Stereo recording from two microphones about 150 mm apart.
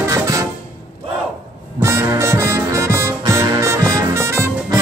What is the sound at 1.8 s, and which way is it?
Music, 20° right (ahead or behind).